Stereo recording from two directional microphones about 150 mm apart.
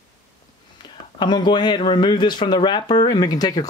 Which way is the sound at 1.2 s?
30° left (ahead or behind).